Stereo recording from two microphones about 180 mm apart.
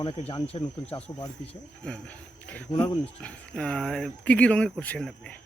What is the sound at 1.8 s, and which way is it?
Speech, 5° left (ahead or behind).